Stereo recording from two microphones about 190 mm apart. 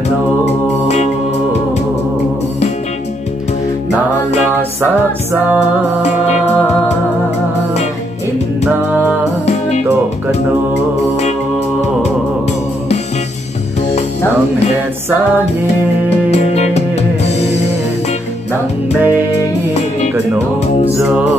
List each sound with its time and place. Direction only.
9.5 s music: 35° left (ahead or behind)
16.3 s music: 35° left (ahead or behind)
18.9 s music: 10° right (ahead or behind)
21.0 s music: 5° right (ahead or behind)